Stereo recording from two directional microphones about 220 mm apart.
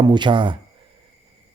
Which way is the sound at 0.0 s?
20° right (ahead or behind).